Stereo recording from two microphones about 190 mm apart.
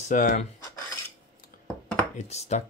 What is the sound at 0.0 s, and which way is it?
Speech, 45° left (ahead or behind).